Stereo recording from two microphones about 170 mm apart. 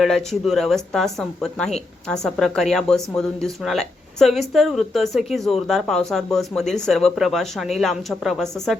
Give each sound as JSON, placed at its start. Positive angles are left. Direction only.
{"t": 0.0, "sound": "speech", "side_deg": 0}